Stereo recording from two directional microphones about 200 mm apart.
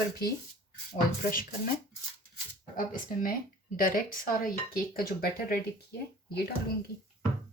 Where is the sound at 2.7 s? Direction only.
45° left (ahead or behind).